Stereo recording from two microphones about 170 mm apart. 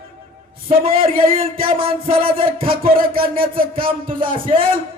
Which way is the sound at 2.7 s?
55° right (ahead or behind).